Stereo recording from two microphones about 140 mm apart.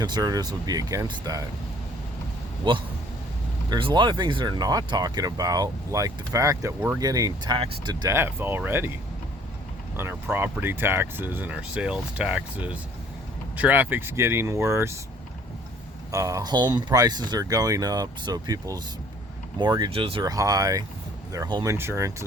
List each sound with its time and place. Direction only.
0.0 s speech: 25° right (ahead or behind)
2.7 s speech: 35° right (ahead or behind)
8.0 s speech: 20° right (ahead or behind)
10.0 s speech: 15° right (ahead or behind)
16.1 s speech: 25° right (ahead or behind); by 20.2 s 40° right (ahead or behind)
20.2 s speech: 25° right (ahead or behind)